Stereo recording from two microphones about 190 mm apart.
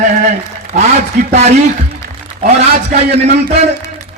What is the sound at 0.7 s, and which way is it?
A man's voice, 40° right (ahead or behind).